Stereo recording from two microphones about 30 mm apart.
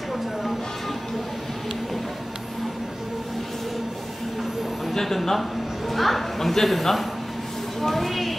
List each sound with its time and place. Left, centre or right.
4.9 s a woman's voice: centre